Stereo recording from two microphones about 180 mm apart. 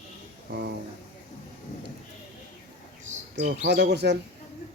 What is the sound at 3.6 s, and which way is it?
Speech, 70° right (ahead or behind).